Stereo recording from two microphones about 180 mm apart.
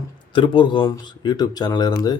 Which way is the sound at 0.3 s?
25° left (ahead or behind).